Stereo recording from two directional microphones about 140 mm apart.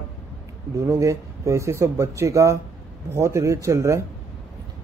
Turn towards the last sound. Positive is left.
turn(degrees=-20)  # may be behind; listen again after turning